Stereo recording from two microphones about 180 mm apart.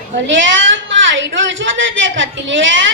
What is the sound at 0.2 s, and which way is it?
Speech, 90° right.